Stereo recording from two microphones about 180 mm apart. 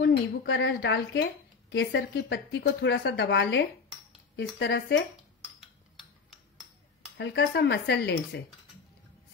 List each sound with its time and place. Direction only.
0.0 s a woman's voice: 75° left (ahead or behind)
7.2 s speech: 80° left